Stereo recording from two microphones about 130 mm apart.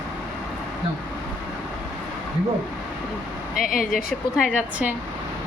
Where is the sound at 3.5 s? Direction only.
90° left.